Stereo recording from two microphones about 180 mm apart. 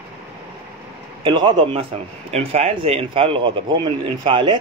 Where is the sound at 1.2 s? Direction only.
25° right (ahead or behind).